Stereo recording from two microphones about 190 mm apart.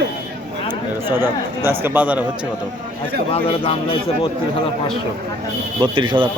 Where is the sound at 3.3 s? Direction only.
30° left (ahead or behind).